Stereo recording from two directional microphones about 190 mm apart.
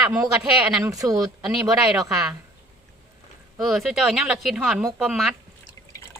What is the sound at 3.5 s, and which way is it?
Speech, centre (ahead or behind).